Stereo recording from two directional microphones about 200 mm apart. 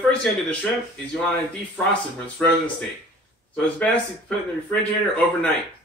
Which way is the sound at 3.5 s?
5° left (ahead or behind).